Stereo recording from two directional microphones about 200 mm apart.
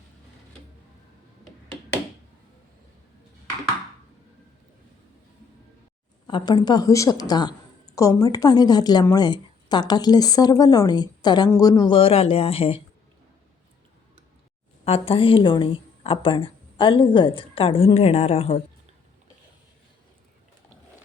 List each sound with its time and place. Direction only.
6.2 s a woman's voice: 20° left (ahead or behind)
14.8 s a woman's voice: 30° left (ahead or behind)